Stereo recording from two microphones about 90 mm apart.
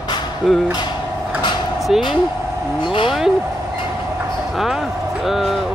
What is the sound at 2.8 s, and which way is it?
Speech, 75° left (ahead or behind).